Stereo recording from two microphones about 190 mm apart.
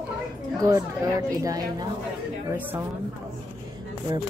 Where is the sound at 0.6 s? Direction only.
20° right (ahead or behind).